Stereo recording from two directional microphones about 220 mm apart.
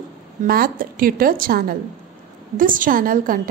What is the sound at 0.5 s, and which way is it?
A woman's voice, 40° right (ahead or behind).